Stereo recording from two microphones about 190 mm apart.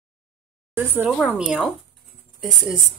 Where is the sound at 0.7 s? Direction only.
10° right (ahead or behind).